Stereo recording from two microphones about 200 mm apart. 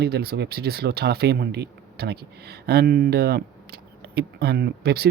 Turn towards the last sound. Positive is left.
turn(degrees=-50)  # may be behind; listen again after turning